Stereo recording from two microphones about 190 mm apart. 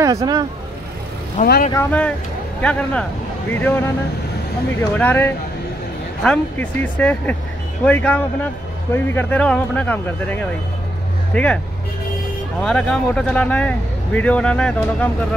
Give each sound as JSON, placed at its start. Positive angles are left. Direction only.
{"t": 0.0, "sound": "speech", "side_deg": -20}
{"t": 1.4, "sound": "speech", "side_deg": 50}
{"t": 1.7, "sound": "speech", "side_deg": 10}
{"t": 4.9, "sound": "speech", "side_deg": 10}
{"t": 12.6, "sound": "speech", "side_deg": 5}